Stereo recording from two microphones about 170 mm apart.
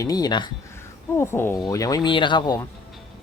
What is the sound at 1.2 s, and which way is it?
Speech, 15° left (ahead or behind).